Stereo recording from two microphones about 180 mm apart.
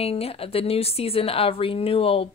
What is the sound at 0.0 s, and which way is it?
A woman's voice, 35° left (ahead or behind).